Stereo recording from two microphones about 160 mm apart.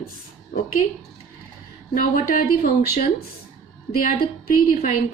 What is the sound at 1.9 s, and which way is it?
Speech, 60° left (ahead or behind).